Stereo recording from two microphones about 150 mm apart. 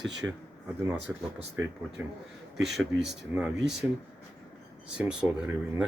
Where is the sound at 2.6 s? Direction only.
Centre (ahead or behind).